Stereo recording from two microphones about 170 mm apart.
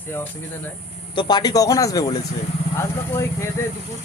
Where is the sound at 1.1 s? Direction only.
25° left (ahead or behind).